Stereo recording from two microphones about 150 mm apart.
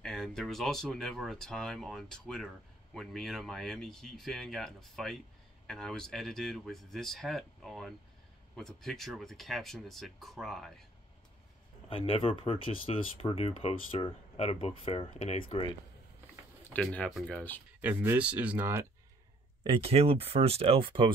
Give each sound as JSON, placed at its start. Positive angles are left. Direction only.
{"t": 0.0, "sound": "speech", "side_deg": 5}
{"t": 11.9, "sound": "speech", "side_deg": 40}
{"t": 16.7, "sound": "speech", "side_deg": 10}
{"t": 17.7, "sound": "speech", "side_deg": -10}
{"t": 19.6, "sound": "speech", "side_deg": -35}